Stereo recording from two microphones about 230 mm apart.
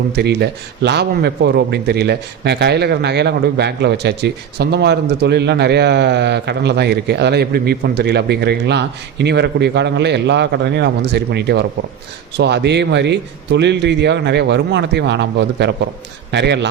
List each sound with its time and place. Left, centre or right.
0.2 s a man's voice: right